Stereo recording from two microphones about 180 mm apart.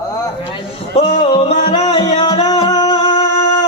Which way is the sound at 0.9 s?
30° left (ahead or behind).